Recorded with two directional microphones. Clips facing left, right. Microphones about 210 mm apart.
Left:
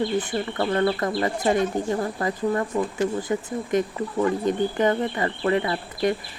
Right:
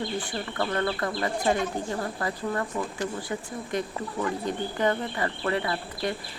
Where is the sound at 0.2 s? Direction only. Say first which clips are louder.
Left 5 dB; 25° left (ahead or behind).